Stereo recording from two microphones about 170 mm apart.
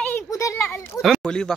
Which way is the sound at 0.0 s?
15° left (ahead or behind).